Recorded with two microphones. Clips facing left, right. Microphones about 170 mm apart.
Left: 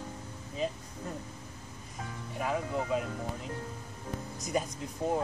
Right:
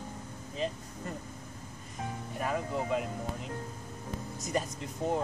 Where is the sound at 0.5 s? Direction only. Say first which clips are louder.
Left 1 dB; 5° left (ahead or behind).